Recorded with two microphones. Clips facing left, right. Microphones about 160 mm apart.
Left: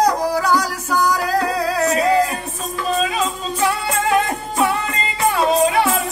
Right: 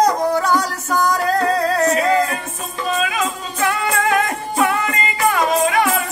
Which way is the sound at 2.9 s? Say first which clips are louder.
Left 1 dB; 30° left (ahead or behind).